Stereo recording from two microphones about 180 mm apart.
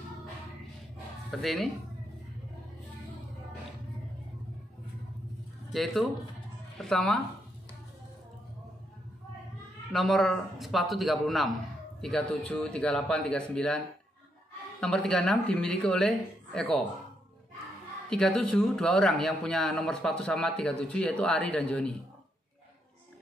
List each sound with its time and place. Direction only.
1.4 s a man's voice: centre (ahead or behind)
5.7 s speech: centre (ahead or behind)
9.9 s a man's voice: centre (ahead or behind)
18.1 s a man's voice: 5° left (ahead or behind)